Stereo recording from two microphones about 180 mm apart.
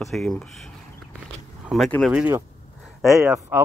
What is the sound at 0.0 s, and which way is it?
Speech, centre (ahead or behind).